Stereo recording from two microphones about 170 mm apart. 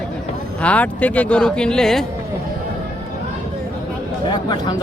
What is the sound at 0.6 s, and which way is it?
Speech, 10° left (ahead or behind).